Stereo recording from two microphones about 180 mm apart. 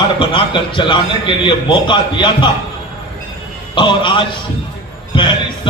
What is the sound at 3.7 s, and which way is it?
Speech, 25° left (ahead or behind).